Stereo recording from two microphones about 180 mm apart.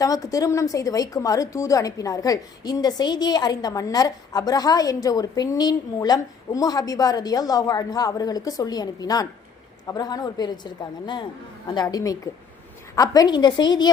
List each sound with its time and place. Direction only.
0.0 s a woman's voice: 20° left (ahead or behind)